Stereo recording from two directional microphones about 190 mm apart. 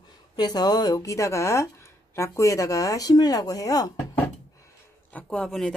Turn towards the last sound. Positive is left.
turn(degrees=0)  # may be behind; listen again after turning